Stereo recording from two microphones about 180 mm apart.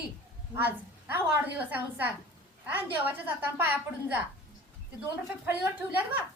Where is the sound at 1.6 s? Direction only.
10° right (ahead or behind).